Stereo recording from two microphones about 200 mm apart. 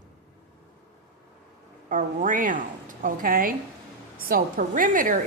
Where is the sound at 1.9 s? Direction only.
40° right (ahead or behind).